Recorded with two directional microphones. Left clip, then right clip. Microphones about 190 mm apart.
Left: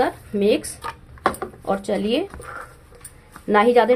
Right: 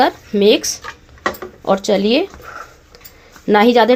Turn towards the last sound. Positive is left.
turn(degrees=-35)  # may be behind; listen again after turning